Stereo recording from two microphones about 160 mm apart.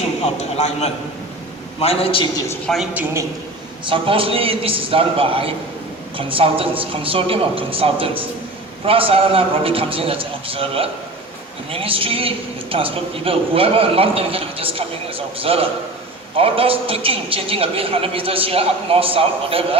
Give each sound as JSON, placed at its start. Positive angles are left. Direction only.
{"t": 0.3, "sound": "a man's voice", "side_deg": 45}
{"t": 2.6, "sound": "a woman's voice", "side_deg": 0}
{"t": 3.8, "sound": "a man's voice", "side_deg": -30}